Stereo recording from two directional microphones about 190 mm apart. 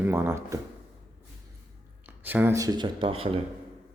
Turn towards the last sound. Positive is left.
turn(degrees=-30)  # may be behind; listen again after turning